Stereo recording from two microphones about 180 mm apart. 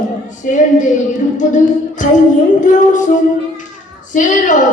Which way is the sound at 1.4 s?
45° left (ahead or behind).